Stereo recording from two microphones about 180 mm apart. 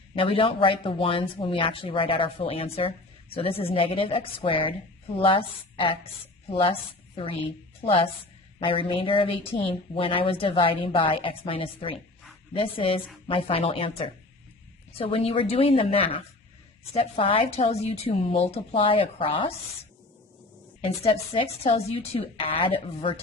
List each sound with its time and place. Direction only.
0.2 s a woman's voice: 30° left (ahead or behind)
20.8 s a woman's voice: 30° left (ahead or behind)